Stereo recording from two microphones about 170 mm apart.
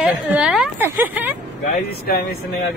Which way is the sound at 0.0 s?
5° right (ahead or behind).